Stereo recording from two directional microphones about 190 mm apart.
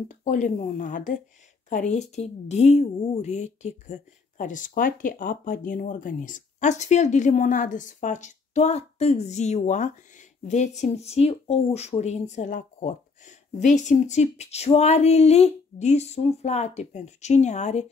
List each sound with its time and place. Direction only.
0.1 s a woman's voice: 40° left (ahead or behind)